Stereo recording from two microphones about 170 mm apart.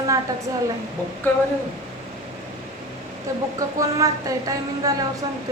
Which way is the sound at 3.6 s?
20° right (ahead or behind).